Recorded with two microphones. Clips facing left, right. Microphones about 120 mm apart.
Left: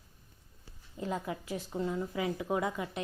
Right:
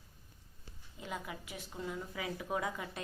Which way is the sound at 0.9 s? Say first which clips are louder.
Left 7 dB; 35° left (ahead or behind).